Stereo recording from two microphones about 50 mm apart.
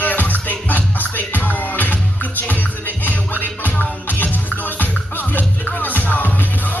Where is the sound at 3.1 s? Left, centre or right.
Left.